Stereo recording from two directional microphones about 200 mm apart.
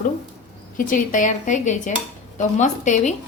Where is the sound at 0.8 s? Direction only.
40° left (ahead or behind).